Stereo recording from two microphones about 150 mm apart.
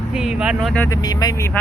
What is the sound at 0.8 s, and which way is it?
Speech, 25° left (ahead or behind).